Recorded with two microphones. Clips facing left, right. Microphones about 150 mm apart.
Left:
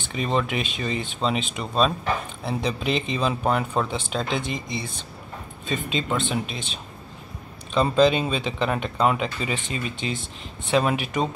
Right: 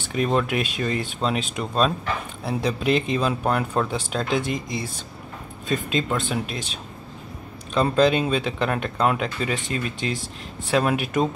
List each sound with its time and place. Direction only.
0.1 s speech: centre (ahead or behind)
4.5 s speech: 50° right (ahead or behind)
5.7 s speech: centre (ahead or behind)